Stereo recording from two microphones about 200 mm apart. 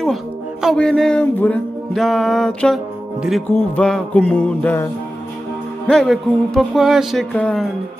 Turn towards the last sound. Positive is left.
turn(degrees=5)  # may be behind; listen again after turning